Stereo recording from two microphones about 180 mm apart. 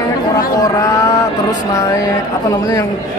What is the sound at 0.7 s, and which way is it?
Speech, 20° left (ahead or behind).